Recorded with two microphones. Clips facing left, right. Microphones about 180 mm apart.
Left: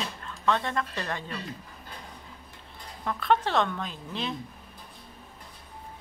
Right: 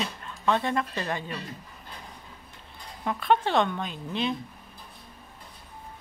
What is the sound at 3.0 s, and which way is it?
A woman's voice, centre (ahead or behind).